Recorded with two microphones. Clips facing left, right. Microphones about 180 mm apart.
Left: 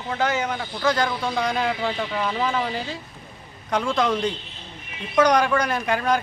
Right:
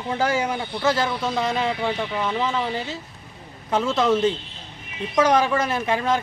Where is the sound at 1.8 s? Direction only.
20° right (ahead or behind).